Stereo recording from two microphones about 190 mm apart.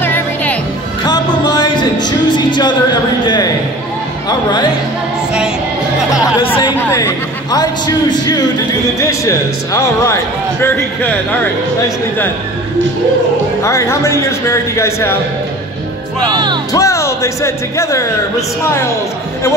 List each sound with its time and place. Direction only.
0.0 s music: 10° left (ahead or behind)
1.0 s music: 20° left (ahead or behind)
6.8 s a man's voice: 15° left (ahead or behind)
13.7 s speech: 15° left (ahead or behind)
16.7 s speech: 15° left (ahead or behind)